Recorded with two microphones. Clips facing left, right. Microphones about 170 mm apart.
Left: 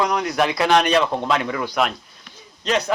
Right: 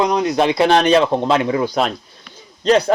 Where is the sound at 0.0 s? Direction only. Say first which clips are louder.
Right 4 dB; 20° right (ahead or behind).